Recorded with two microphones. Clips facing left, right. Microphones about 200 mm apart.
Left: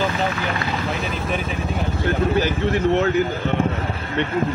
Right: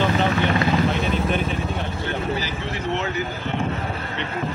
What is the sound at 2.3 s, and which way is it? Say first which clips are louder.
Vehicle: left 8 dB; 55° left (ahead or behind).